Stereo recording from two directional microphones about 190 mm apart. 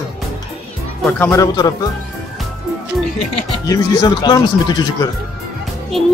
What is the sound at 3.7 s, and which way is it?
Speech, 20° left (ahead or behind).